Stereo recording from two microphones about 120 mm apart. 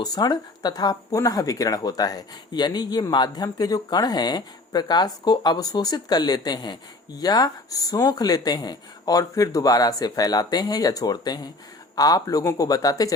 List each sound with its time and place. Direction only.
0.0 s speech: 35° left (ahead or behind)